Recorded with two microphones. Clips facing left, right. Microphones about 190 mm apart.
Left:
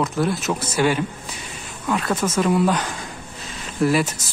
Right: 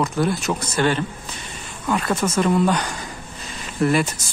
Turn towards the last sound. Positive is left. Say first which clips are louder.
# even
turn(degrees=0)  # may be behind; listen again after turning